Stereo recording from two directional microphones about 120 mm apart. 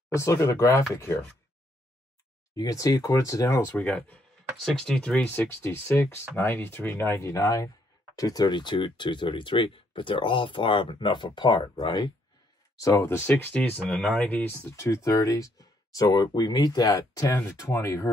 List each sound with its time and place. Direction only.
0.1 s speech: 25° left (ahead or behind)
2.5 s speech: 30° left (ahead or behind); by 5.2 s 5° left (ahead or behind)
5.2 s speech: 20° left (ahead or behind)
13.4 s speech: 10° left (ahead or behind)
14.5 s speech: 25° left (ahead or behind)